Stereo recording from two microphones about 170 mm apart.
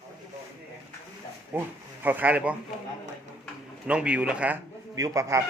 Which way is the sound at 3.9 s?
5° right (ahead or behind).